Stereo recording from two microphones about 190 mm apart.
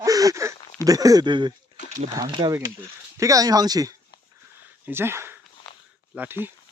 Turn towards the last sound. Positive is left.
turn(degrees=-10)  # may be behind; listen again after turning